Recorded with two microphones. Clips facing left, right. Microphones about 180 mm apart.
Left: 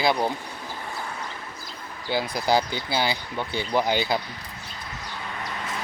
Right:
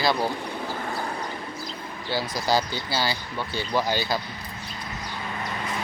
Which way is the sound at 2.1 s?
15° left (ahead or behind).